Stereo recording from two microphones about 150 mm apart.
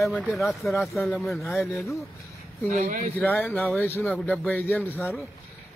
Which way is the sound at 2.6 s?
60° right (ahead or behind).